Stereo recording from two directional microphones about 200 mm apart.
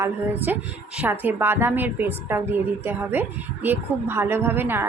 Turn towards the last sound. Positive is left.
turn(degrees=-10)  # may be behind; listen again after turning